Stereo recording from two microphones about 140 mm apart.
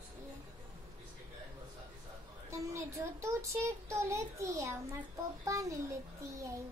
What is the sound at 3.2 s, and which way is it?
A child's voice, 20° right (ahead or behind).